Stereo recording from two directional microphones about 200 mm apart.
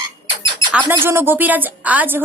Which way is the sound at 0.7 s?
10° right (ahead or behind).